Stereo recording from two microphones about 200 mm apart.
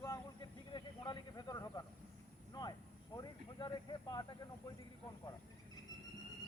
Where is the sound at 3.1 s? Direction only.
20° left (ahead or behind).